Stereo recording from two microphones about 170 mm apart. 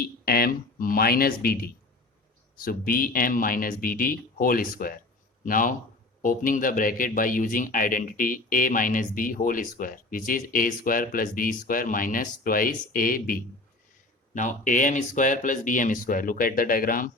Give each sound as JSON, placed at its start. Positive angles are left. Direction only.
{"t": 0.0, "sound": "speech", "side_deg": 60}